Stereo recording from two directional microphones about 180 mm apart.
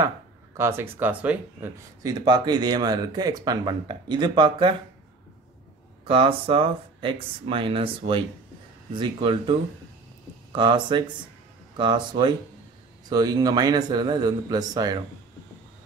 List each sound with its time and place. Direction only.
0.6 s speech: 15° right (ahead or behind)
2.0 s speech: 25° right (ahead or behind)
6.0 s speech: 30° right (ahead or behind)